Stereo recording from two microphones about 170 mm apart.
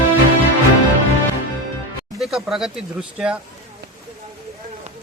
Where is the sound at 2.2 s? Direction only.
Centre (ahead or behind).